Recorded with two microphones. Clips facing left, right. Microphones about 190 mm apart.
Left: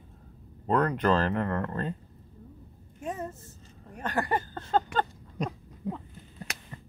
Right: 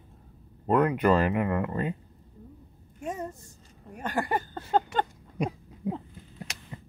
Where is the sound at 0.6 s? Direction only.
5° right (ahead or behind).